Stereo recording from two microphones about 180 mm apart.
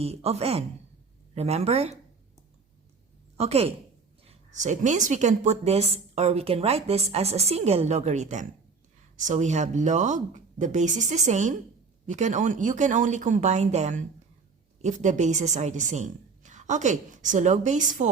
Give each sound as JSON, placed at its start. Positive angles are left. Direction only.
{"t": 0.0, "sound": "a woman's voice", "side_deg": -35}
{"t": 3.3, "sound": "a woman's voice", "side_deg": -35}